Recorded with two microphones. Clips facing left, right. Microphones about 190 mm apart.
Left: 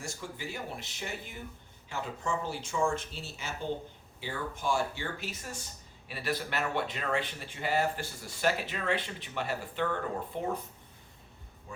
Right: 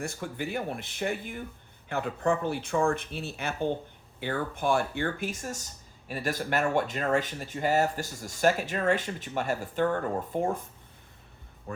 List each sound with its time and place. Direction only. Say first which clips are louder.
0.0 s speech: right 6 dB; 60° right (ahead or behind)